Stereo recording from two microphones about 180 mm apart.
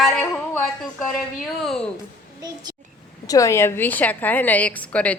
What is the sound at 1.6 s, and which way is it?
Speech, centre (ahead or behind).